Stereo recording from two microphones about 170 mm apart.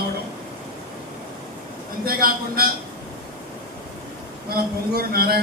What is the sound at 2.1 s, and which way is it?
Speech, 60° right (ahead or behind).